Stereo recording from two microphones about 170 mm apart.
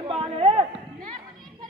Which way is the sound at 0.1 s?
30° right (ahead or behind).